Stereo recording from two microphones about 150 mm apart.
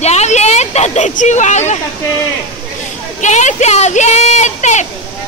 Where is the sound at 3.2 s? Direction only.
50° left (ahead or behind).